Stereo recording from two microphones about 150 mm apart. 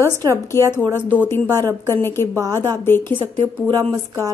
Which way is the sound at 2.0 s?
15° left (ahead or behind).